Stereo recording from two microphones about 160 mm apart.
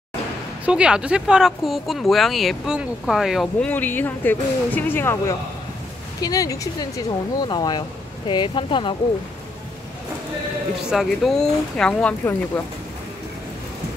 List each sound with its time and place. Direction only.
0.7 s a woman's voice: 5° right (ahead or behind); by 8.9 s 30° left (ahead or behind)
10.8 s speech: 5° right (ahead or behind)